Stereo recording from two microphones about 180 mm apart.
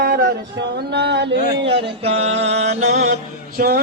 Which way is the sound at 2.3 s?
85° right.